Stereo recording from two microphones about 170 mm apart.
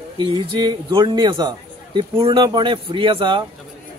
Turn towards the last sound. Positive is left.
turn(degrees=-30)  # may be behind; listen again after turning